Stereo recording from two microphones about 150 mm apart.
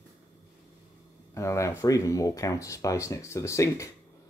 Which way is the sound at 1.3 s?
20° left (ahead or behind).